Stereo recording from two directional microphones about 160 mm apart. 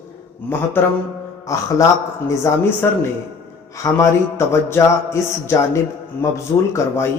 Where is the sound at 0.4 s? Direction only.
10° left (ahead or behind).